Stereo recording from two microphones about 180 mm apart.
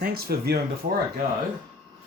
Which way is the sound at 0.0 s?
60° right (ahead or behind).